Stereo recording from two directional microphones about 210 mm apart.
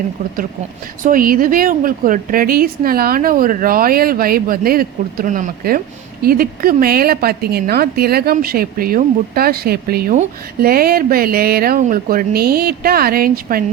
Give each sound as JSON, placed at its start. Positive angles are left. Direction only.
{"t": 1.0, "sound": "a woman's voice", "side_deg": -40}